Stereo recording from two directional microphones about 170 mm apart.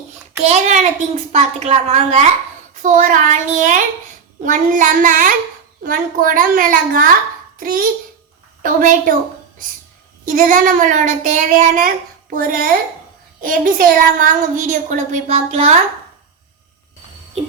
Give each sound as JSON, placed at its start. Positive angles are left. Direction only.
{"t": 0.4, "sound": "a woman's voice", "side_deg": -40}
{"t": 2.8, "sound": "a child's voice", "side_deg": -50}
{"t": 10.2, "sound": "a child's voice", "side_deg": -50}